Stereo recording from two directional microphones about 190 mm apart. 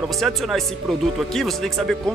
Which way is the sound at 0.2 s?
Centre (ahead or behind).